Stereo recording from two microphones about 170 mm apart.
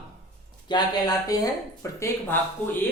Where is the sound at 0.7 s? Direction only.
25° left (ahead or behind).